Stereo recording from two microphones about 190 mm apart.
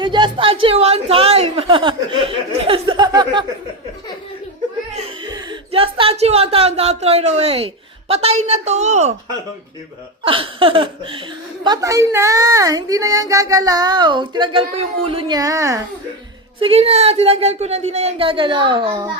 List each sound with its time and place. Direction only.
0.0 s a woman's voice: 25° right (ahead or behind)
2.6 s a sound: 25° right (ahead or behind)
4.9 s speech: 25° right (ahead or behind)
10.2 s a woman's voice: 30° right (ahead or behind)
16.6 s speech: 30° right (ahead or behind)